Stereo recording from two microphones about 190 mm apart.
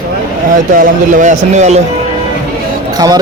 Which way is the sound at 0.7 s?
45° right (ahead or behind).